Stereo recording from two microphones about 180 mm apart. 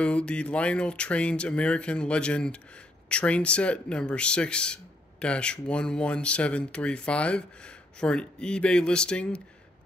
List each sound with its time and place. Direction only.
0.0 s speech: 5° left (ahead or behind)